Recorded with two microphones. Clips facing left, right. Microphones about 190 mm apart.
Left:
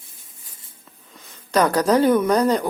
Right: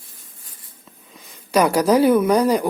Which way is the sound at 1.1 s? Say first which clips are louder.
Right 2 dB; 10° right (ahead or behind).